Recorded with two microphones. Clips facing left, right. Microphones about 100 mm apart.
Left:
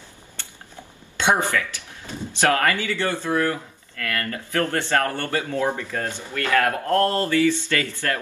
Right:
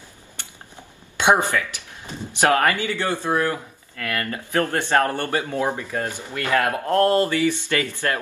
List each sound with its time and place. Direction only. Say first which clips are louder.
1.1 s speech: right 2 dB; 15° right (ahead or behind)